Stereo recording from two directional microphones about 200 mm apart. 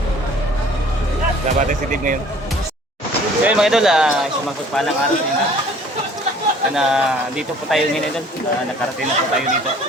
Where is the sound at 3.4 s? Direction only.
5° right (ahead or behind).